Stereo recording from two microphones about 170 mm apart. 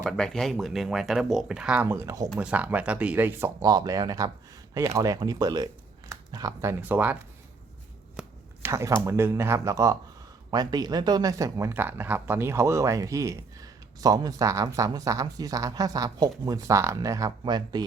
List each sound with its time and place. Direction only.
0.0 s speech: 5° left (ahead or behind); by 2.3 s 20° right (ahead or behind)
2.3 s speech: 5° right (ahead or behind)
8.2 s chopping: 5° right (ahead or behind)
8.6 s speech: 20° right (ahead or behind)